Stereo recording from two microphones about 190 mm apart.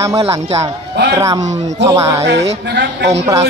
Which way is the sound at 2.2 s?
65° right (ahead or behind).